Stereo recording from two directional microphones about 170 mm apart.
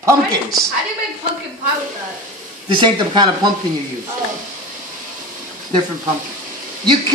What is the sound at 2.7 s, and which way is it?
Speech, 30° right (ahead or behind).